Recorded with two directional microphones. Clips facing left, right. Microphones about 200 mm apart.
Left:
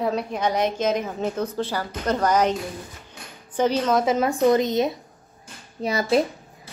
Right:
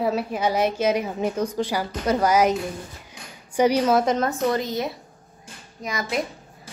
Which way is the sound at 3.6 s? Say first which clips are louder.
Right 2 dB; 10° right (ahead or behind).